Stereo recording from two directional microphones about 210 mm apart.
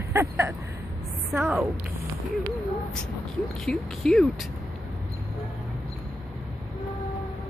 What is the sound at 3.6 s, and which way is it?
Speech, centre (ahead or behind).